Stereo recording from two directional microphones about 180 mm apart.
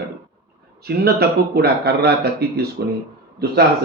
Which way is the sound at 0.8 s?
60° right (ahead or behind).